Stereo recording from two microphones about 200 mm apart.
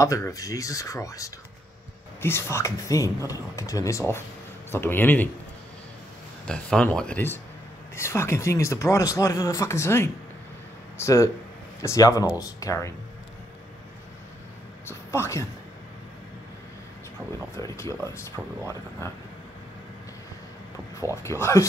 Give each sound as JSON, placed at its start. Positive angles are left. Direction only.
{"t": 0.0, "sound": "speech", "side_deg": 15}
{"t": 6.4, "sound": "speech", "side_deg": 5}
{"t": 14.9, "sound": "speech", "side_deg": 15}
{"t": 17.6, "sound": "speech", "side_deg": 15}
{"t": 21.0, "sound": "speech", "side_deg": 15}